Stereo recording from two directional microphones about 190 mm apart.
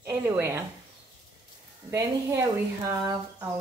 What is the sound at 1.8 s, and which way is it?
Speech, 15° right (ahead or behind).